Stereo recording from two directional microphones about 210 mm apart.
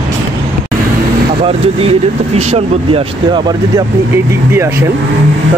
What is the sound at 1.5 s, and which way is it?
Speech, 30° right (ahead or behind).